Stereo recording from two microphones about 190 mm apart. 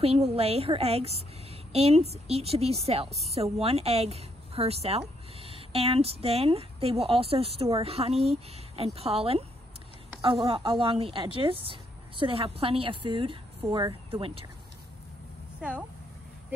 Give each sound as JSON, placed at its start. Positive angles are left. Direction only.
{"t": 0.4, "sound": "speech", "side_deg": -30}